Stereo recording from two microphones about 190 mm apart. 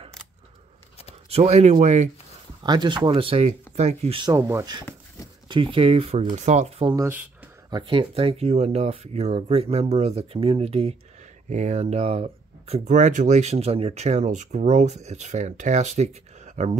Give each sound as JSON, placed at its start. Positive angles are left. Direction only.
{"t": 1.3, "sound": "speech", "side_deg": -35}
{"t": 2.6, "sound": "speech", "side_deg": -25}
{"t": 4.3, "sound": "speech", "side_deg": -15}
{"t": 6.9, "sound": "speech", "side_deg": -15}
{"t": 7.7, "sound": "speech", "side_deg": -25}